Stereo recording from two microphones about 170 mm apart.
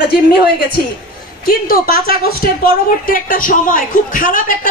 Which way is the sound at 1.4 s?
60° left (ahead or behind).